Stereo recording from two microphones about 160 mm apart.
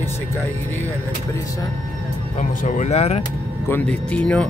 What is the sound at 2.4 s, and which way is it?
Speech, 50° left (ahead or behind).